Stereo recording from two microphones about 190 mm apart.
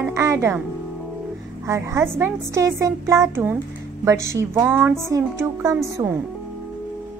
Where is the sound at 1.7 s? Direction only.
15° right (ahead or behind).